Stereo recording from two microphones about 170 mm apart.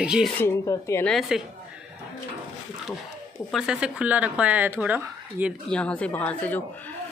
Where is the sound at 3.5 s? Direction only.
5° right (ahead or behind).